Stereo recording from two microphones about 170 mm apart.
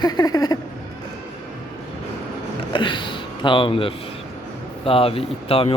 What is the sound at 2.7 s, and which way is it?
A man's voice, 30° left (ahead or behind).